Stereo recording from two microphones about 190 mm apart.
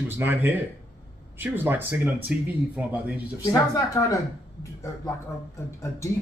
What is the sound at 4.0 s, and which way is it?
Speech, 15° left (ahead or behind).